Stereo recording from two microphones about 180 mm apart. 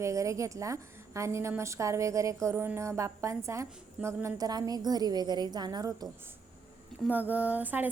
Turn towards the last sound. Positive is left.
turn(degrees=-10)  # may be behind; listen again after turning